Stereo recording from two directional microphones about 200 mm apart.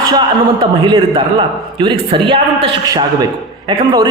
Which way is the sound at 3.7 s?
20° right (ahead or behind).